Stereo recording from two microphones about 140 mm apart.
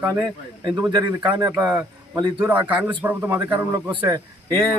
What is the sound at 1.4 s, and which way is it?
Speech, 15° right (ahead or behind).